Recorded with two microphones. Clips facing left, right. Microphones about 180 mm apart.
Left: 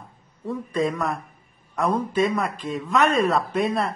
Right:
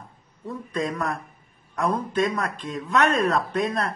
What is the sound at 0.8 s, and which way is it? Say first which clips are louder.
Speech: left 2 dB; centre (ahead or behind).